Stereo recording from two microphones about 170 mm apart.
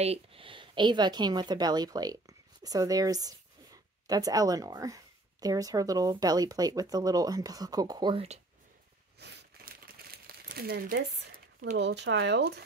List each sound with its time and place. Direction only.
0.0 s a woman's voice: 35° right (ahead or behind)
9.2 s crumpling: 70° right (ahead or behind)
11.7 s speech: 90° right